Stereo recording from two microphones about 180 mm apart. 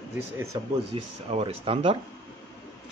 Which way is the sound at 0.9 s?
30° right (ahead or behind).